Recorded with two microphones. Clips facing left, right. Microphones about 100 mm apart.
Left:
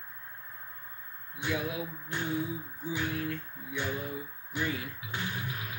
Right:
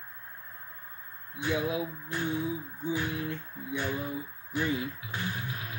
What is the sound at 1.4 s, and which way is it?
Music, 25° right (ahead or behind).